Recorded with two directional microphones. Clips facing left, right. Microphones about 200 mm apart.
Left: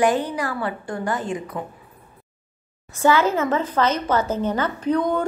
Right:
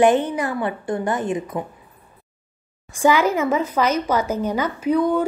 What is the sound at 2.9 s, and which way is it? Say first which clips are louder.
A woman's voice: right 1 dB; 10° right (ahead or behind).